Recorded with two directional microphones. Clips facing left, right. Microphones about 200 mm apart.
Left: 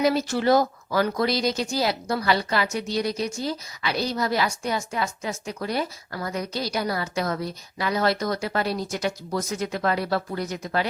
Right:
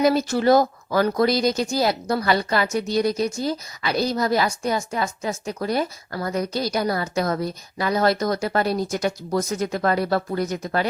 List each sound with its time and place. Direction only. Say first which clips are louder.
0.0 s speech: right 3 dB; 45° right (ahead or behind)